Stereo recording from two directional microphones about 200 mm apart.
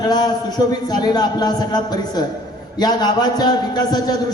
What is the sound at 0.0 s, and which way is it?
A man's voice, 20° left (ahead or behind).